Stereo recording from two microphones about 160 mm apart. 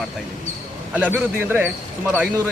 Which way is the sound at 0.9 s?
10° right (ahead or behind).